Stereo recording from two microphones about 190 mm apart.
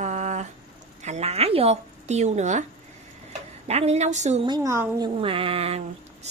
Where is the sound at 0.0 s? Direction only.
40° right (ahead or behind).